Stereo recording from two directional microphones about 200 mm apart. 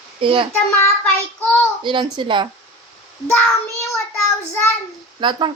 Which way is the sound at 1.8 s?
25° right (ahead or behind).